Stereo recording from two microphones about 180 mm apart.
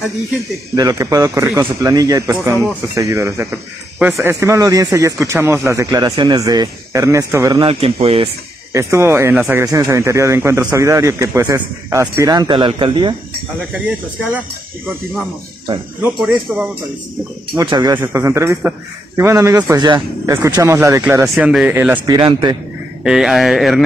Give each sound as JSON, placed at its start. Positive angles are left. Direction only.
{"t": 0.7, "sound": "speech", "side_deg": -20}
{"t": 7.6, "sound": "speech", "side_deg": -30}
{"t": 8.7, "sound": "speech", "side_deg": -15}
{"t": 13.7, "sound": "speech", "side_deg": -5}
{"t": 16.0, "sound": "speech", "side_deg": -5}
{"t": 17.6, "sound": "speech", "side_deg": -20}
{"t": 21.5, "sound": "speech", "side_deg": -5}
{"t": 22.0, "sound": "speech", "side_deg": -20}
{"t": 23.0, "sound": "speech", "side_deg": 0}